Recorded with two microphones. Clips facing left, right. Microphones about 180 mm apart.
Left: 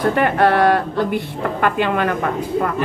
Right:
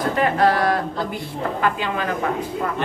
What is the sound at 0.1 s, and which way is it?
A woman's voice, 60° left (ahead or behind).